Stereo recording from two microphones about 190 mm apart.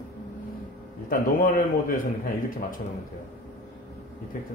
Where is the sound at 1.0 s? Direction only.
45° left (ahead or behind).